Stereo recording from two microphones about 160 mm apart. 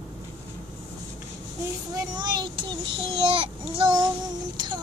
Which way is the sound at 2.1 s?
25° right (ahead or behind).